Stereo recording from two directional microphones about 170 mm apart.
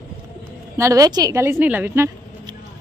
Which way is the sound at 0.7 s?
20° right (ahead or behind).